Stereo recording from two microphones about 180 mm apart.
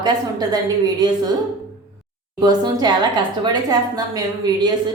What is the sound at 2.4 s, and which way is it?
A woman's voice, 20° right (ahead or behind).